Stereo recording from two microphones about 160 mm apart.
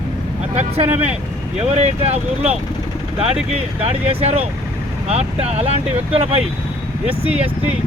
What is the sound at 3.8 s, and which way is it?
Speech, 40° right (ahead or behind).